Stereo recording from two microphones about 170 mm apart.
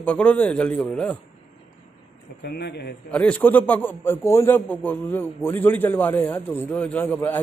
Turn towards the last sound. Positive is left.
turn(degrees=10)  # may be behind; listen again after turning